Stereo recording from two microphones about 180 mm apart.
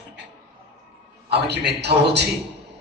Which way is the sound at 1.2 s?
65° right (ahead or behind).